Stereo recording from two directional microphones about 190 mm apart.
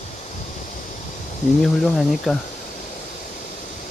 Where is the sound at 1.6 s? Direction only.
Centre (ahead or behind).